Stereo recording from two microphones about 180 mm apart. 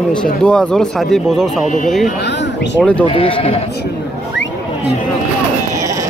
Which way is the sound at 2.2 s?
75° left (ahead or behind).